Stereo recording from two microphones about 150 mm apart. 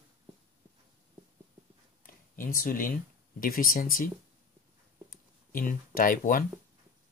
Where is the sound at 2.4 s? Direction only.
70° left (ahead or behind).